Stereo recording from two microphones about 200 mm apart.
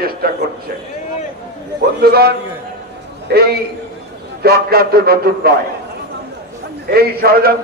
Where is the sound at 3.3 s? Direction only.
50° right (ahead or behind).